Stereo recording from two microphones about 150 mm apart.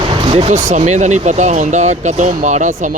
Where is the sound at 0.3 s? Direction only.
45° right (ahead or behind).